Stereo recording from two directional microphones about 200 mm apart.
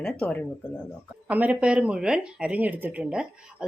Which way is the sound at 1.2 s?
5° right (ahead or behind).